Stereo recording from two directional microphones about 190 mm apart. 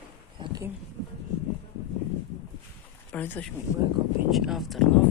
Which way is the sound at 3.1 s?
10° left (ahead or behind).